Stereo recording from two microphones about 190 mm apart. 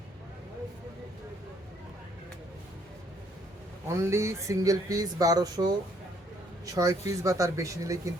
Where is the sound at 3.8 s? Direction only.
15° right (ahead or behind).